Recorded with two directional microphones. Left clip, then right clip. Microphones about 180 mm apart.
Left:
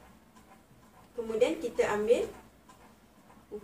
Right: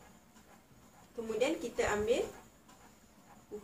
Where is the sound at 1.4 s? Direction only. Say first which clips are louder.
Left 5 dB; 20° right (ahead or behind).